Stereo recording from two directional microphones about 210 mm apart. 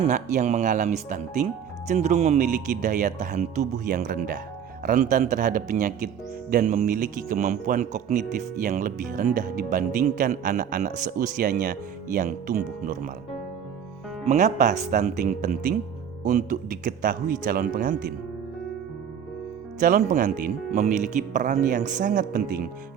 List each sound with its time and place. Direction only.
0.0 s speech: 35° right (ahead or behind)
14.3 s speech: 35° right (ahead or behind)
19.8 s speech: 40° right (ahead or behind)